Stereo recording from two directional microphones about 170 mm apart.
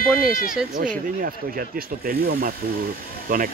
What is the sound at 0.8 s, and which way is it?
Speech, 60° right (ahead or behind).